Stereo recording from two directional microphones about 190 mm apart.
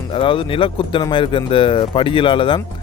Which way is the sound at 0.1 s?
25° left (ahead or behind).